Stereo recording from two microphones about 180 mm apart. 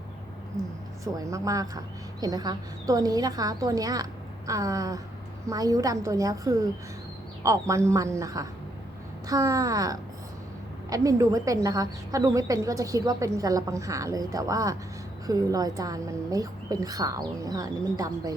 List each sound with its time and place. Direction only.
1.0 s a woman's voice: 20° right (ahead or behind)